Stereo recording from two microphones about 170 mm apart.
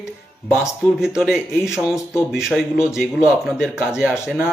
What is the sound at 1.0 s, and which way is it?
Speech, 5° right (ahead or behind).